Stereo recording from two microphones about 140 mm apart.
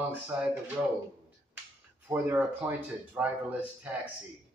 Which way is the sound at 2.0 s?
15° right (ahead or behind).